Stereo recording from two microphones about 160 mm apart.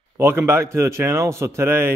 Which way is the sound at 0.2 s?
15° right (ahead or behind).